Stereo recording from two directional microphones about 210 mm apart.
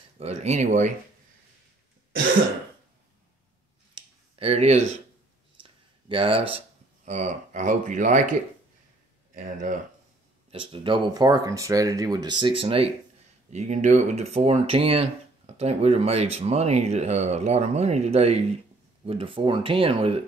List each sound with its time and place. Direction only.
0.2 s speech: 30° right (ahead or behind)
3.9 s clicking: 30° right (ahead or behind)
5.6 s a sound: 25° right (ahead or behind)
7.1 s speech: 35° right (ahead or behind)
10.5 s speech: 25° right (ahead or behind)